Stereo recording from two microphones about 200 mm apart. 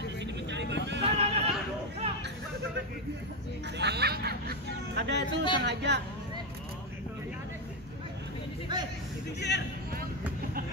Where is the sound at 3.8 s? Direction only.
55° right (ahead or behind).